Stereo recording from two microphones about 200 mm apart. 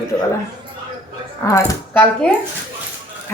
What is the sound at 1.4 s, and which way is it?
Speech, 15° left (ahead or behind).